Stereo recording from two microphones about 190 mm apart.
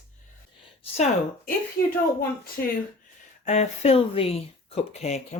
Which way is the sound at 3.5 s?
35° left (ahead or behind).